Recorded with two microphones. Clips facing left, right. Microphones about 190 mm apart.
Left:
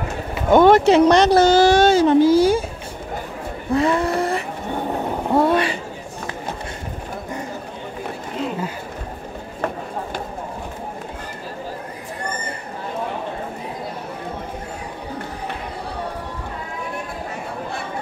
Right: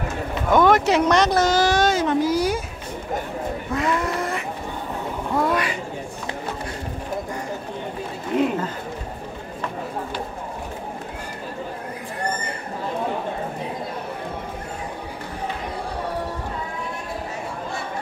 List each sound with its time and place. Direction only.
0.5 s speech: 30° left (ahead or behind)
3.7 s speech: 30° left (ahead or behind)
5.3 s a sound: 30° left (ahead or behind)